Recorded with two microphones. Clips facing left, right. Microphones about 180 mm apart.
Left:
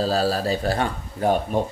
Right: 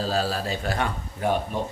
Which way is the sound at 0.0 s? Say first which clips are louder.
Left 4 dB; 35° left (ahead or behind).